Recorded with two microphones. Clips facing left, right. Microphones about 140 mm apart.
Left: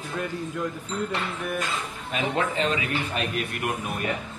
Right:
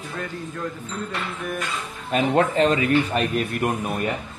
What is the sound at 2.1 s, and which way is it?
A man's voice, 45° right (ahead or behind).